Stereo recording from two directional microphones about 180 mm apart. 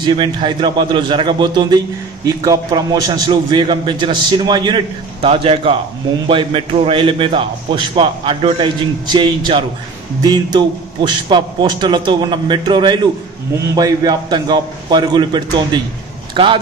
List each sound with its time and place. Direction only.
0.0 s a man's voice: 25° right (ahead or behind)